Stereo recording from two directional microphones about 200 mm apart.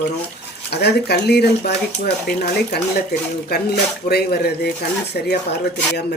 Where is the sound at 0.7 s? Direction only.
55° left (ahead or behind).